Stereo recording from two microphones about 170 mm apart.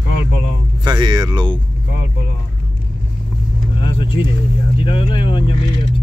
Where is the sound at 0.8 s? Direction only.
25° right (ahead or behind).